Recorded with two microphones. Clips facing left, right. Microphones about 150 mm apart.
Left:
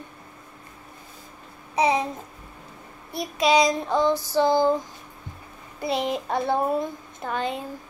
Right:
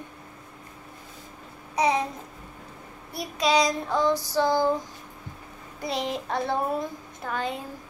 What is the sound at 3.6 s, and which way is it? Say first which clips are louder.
Child singing: left 3 dB; 20° left (ahead or behind).